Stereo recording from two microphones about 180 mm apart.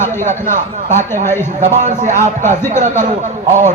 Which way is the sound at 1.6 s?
40° right (ahead or behind).